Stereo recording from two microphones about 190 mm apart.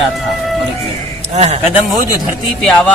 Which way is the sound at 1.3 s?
35° right (ahead or behind).